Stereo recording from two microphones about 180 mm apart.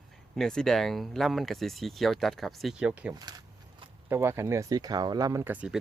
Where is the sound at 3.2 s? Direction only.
20° right (ahead or behind).